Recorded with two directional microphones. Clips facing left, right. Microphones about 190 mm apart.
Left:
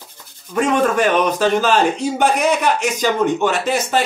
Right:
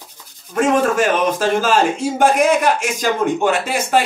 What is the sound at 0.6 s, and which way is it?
Speech, 45° right (ahead or behind).